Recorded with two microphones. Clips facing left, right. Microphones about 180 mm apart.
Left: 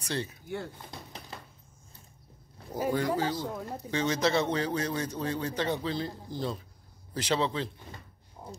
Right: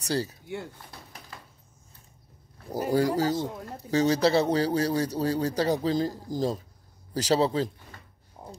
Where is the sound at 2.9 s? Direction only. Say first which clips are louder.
Right 5 dB; 40° right (ahead or behind).